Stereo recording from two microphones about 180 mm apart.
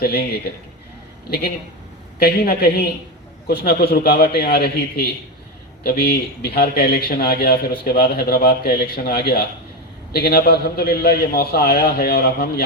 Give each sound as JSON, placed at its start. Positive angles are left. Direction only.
{"t": 0.0, "sound": "a man's voice", "side_deg": 60}
{"t": 2.1, "sound": "a man's voice", "side_deg": 60}